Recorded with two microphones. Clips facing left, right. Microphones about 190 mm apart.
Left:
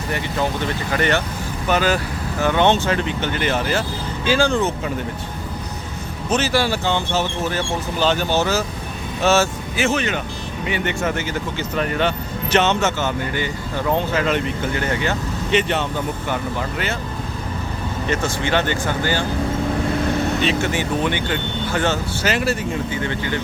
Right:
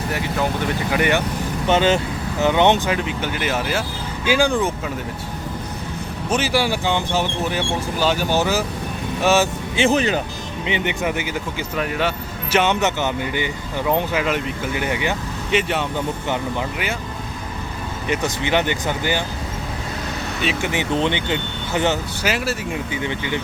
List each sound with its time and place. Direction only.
0.1 s speech: 5° right (ahead or behind)
1.6 s speech: 25° right (ahead or behind)
6.3 s speech: 15° right (ahead or behind)
9.7 s speech: 30° right (ahead or behind)
10.7 s speech: 15° right (ahead or behind)
18.1 s speech: 15° right (ahead or behind)
20.4 s speech: 10° right (ahead or behind)